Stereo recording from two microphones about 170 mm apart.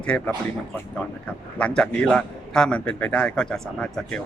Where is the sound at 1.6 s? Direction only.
5° left (ahead or behind).